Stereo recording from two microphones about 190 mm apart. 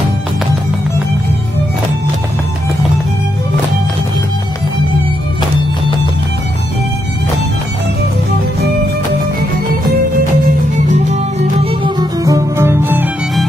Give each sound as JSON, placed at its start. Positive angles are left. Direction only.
{"t": 10.9, "sound": "music", "side_deg": -35}
{"t": 12.0, "sound": "music", "side_deg": -15}